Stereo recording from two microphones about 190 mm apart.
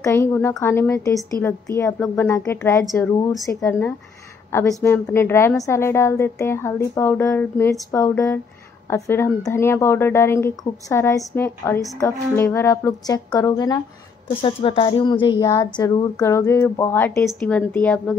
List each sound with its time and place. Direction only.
0.0 s a woman's voice: 15° left (ahead or behind)